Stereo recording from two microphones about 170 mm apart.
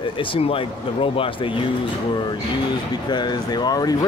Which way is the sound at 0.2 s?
30° left (ahead or behind).